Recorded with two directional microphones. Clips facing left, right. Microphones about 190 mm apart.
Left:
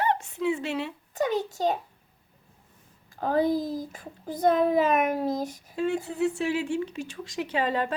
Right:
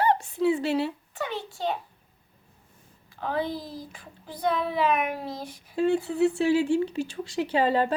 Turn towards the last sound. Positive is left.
turn(degrees=-30)  # may be behind; listen again after turning